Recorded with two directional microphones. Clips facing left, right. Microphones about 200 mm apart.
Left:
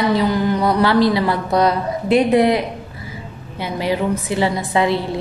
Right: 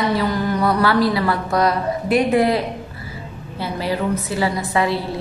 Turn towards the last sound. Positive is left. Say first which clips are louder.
# left 2 dB
turn(degrees=20)  # may be behind; listen again after turning